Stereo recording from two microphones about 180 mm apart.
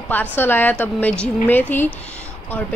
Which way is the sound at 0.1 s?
10° left (ahead or behind).